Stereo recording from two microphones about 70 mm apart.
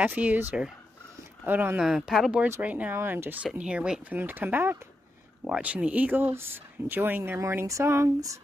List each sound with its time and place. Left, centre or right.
0.0 s speech: right
1.8 s speech: centre
2.6 s speech: right
3.5 s speech: centre
4.1 s speech: right
5.4 s speech: centre; by 8.4 s right